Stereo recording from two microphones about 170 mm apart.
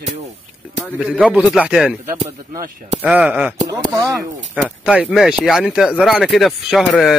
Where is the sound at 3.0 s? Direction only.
10° right (ahead or behind).